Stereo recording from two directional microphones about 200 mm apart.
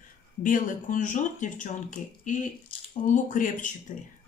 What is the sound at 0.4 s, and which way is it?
Speech, 40° left (ahead or behind).